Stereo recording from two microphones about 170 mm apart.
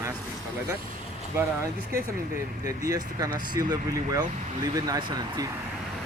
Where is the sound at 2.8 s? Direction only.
20° right (ahead or behind).